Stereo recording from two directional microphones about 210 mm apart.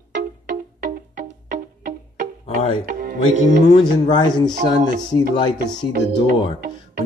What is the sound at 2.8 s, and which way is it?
Speech, 45° right (ahead or behind).